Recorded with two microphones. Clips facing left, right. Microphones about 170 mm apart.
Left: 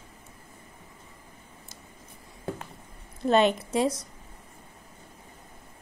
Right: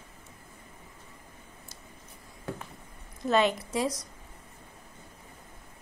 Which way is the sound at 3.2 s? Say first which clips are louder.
Left 3 dB; 25° left (ahead or behind).